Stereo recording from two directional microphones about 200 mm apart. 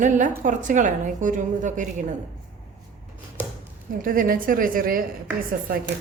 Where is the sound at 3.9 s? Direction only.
45° right (ahead or behind).